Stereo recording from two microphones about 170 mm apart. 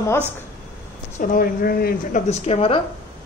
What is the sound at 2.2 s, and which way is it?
Speech, 40° left (ahead or behind).